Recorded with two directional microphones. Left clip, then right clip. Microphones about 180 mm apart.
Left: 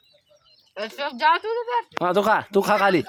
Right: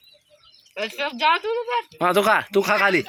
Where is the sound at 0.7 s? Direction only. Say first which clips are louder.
Right 2 dB; 10° right (ahead or behind).